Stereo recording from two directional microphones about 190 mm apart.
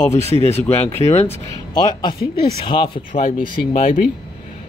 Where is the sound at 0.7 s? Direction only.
10° left (ahead or behind).